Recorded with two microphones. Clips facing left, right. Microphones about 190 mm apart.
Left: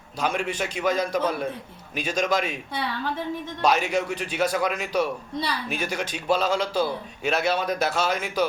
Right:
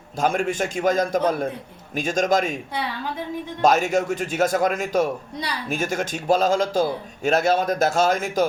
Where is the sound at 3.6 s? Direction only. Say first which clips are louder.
Right 4 dB; 45° right (ahead or behind).